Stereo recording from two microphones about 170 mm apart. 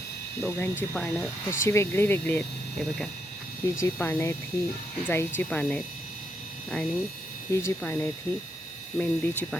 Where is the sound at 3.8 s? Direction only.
10° left (ahead or behind).